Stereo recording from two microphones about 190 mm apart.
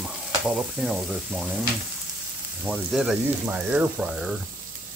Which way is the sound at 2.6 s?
Centre (ahead or behind).